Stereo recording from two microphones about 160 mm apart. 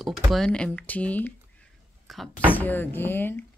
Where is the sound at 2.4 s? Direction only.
10° left (ahead or behind).